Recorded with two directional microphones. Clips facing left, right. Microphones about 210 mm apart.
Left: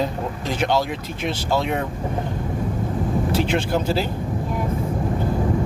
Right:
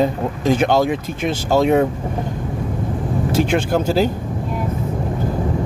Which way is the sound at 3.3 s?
50° right (ahead or behind).